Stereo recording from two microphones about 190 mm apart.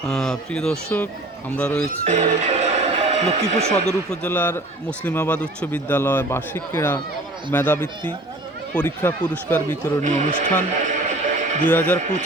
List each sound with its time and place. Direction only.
0.0 s a man's voice: centre (ahead or behind)
1.8 s speech: 35° right (ahead or behind)
3.7 s a man's voice: 5° left (ahead or behind)
10.0 s speech: 40° right (ahead or behind)
10.8 s a sound: 40° right (ahead or behind)
11.7 s a man's voice: 10° left (ahead or behind)
11.9 s speech: 40° right (ahead or behind)